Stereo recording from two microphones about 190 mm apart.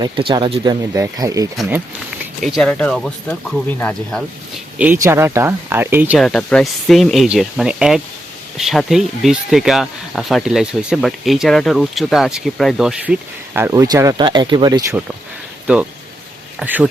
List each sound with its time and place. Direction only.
0.0 s speech: 25° right (ahead or behind)
2.4 s speech: centre (ahead or behind)
4.9 s speech: 15° right (ahead or behind)
6.2 s speech: 5° left (ahead or behind); by 15.0 s 15° right (ahead or behind)
15.6 s speech: 5° right (ahead or behind)